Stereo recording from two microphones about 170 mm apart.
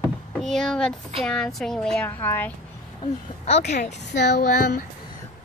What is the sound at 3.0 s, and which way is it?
Speech, 40° left (ahead or behind).